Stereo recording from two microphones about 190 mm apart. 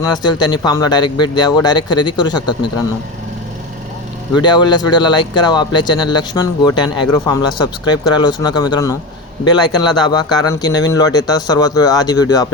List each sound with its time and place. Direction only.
0.0 s speech: 20° left (ahead or behind)
4.4 s speech: 25° left (ahead or behind)
10.0 s speech: 20° left (ahead or behind)